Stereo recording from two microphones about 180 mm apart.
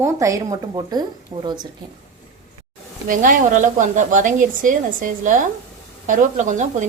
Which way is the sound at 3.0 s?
50° right (ahead or behind).